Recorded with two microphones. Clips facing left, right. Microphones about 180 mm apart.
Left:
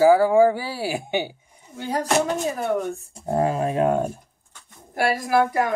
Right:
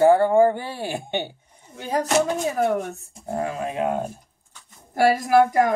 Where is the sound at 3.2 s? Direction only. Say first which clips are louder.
Left 5 dB; 40° left (ahead or behind).